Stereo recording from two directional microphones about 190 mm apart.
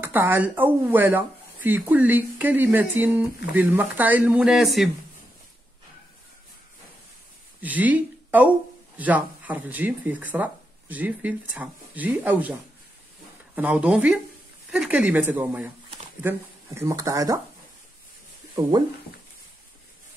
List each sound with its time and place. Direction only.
0.0 s speech: 10° right (ahead or behind)
7.6 s speech: 10° right (ahead or behind)
13.6 s speech: 5° right (ahead or behind)
18.5 s speech: 25° right (ahead or behind)